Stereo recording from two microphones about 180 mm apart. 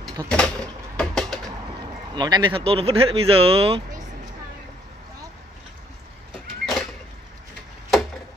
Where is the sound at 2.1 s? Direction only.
25° right (ahead or behind).